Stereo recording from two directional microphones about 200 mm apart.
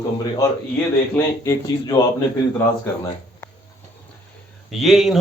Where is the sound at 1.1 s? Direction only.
15° left (ahead or behind).